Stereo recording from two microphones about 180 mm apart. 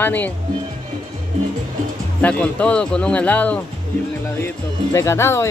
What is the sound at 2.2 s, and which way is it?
Speech, 10° left (ahead or behind).